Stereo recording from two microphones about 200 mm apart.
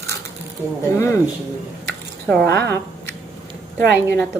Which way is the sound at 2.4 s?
55° right (ahead or behind).